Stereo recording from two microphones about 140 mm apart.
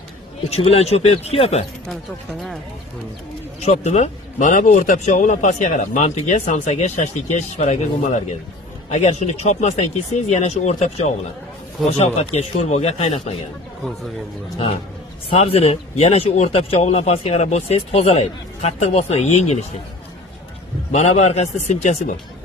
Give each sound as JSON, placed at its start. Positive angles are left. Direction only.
{"t": 0.5, "sound": "speech", "side_deg": 50}
{"t": 3.6, "sound": "speech", "side_deg": 50}
{"t": 15.3, "sound": "speech", "side_deg": 45}
{"t": 20.9, "sound": "speech", "side_deg": 55}